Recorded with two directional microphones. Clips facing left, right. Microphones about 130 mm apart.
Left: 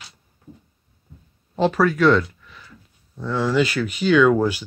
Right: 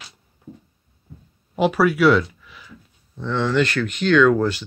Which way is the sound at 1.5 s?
10° right (ahead or behind).